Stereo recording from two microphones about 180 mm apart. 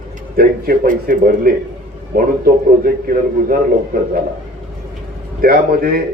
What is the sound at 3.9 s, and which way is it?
Speech, 55° right (ahead or behind).